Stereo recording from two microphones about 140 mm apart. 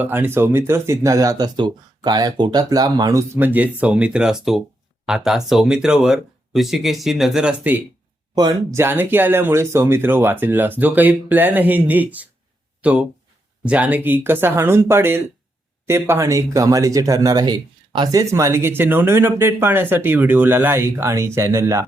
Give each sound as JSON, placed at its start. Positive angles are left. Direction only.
{"t": 0.0, "sound": "speech", "side_deg": -15}
{"t": 8.4, "sound": "speech", "side_deg": -30}
{"t": 8.8, "sound": "speech", "side_deg": -15}